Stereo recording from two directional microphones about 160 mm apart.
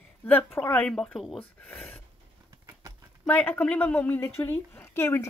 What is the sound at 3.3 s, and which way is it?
A woman's voice, 10° left (ahead or behind).